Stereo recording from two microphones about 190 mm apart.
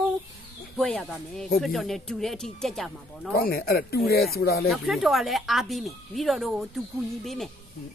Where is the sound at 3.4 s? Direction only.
50° left (ahead or behind).